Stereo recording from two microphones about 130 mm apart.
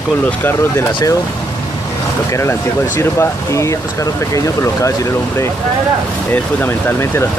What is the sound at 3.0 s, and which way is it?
Speech, 20° left (ahead or behind).